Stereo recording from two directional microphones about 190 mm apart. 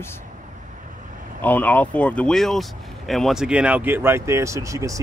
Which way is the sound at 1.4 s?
10° left (ahead or behind).